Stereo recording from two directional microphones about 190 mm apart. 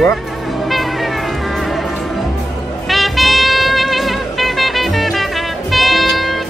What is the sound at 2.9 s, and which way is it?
Music, centre (ahead or behind).